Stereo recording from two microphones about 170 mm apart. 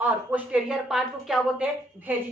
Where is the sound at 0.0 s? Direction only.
10° right (ahead or behind).